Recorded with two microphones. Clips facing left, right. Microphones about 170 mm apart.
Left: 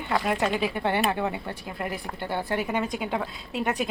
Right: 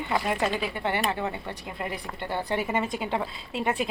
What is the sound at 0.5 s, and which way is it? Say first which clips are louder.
A woman's voice: left 3 dB; 15° left (ahead or behind).